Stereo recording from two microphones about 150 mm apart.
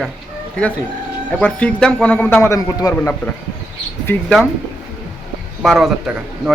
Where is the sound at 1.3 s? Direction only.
10° left (ahead or behind).